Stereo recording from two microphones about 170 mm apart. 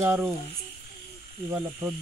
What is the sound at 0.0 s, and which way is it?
Speech, 15° right (ahead or behind).